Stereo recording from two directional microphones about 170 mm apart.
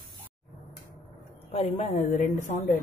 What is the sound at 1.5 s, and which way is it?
Speech, 40° left (ahead or behind).